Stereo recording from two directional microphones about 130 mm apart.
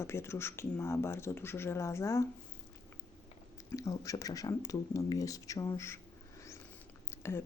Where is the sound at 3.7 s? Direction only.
25° left (ahead or behind).